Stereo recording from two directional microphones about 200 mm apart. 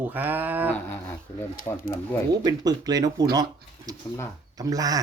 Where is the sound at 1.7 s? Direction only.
10° left (ahead or behind).